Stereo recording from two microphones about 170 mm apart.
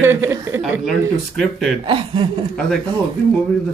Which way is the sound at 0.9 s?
Centre (ahead or behind).